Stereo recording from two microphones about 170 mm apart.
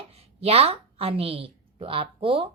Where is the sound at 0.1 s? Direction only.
35° right (ahead or behind).